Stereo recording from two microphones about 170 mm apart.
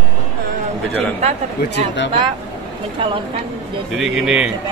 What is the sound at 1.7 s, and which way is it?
Speech, 90° left.